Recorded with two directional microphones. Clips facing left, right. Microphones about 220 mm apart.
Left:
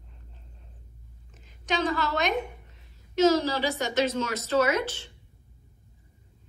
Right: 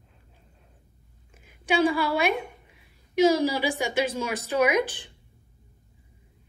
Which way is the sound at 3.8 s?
10° right (ahead or behind).